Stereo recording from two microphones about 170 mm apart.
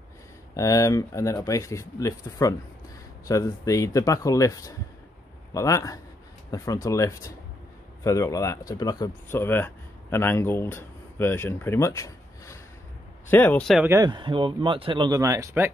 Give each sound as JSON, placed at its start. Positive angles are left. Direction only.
{"t": 0.6, "sound": "speech", "side_deg": 20}
{"t": 13.7, "sound": "speech", "side_deg": -15}